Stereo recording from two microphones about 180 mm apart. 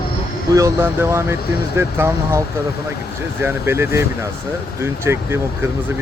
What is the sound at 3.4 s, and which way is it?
Speech, 15° right (ahead or behind).